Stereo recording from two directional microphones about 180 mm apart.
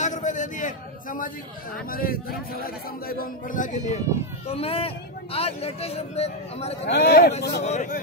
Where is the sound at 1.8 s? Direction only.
55° left (ahead or behind).